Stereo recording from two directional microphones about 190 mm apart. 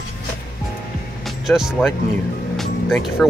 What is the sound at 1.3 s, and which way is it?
Speech, centre (ahead or behind).